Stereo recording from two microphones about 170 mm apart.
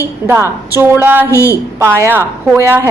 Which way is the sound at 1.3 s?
15° left (ahead or behind).